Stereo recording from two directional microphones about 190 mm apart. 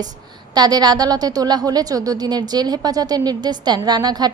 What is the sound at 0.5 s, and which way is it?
A woman's voice, 20° right (ahead or behind).